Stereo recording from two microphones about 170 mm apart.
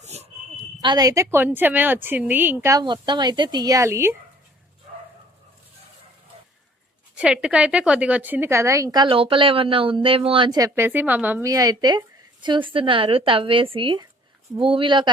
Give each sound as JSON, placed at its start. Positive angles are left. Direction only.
{"t": 0.0, "sound": "a sound", "side_deg": -40}
{"t": 0.8, "sound": "a woman's voice", "side_deg": -25}
{"t": 7.2, "sound": "a woman's voice", "side_deg": -5}